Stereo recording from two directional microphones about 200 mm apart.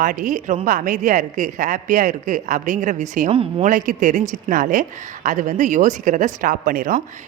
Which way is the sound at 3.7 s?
40° right (ahead or behind).